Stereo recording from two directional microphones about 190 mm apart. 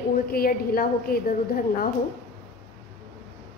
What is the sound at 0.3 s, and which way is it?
A woman's voice, 50° left (ahead or behind).